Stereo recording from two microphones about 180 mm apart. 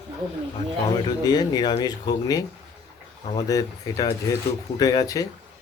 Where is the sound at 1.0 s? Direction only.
20° left (ahead or behind).